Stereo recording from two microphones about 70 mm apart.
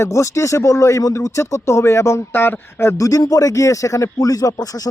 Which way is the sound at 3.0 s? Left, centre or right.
Left.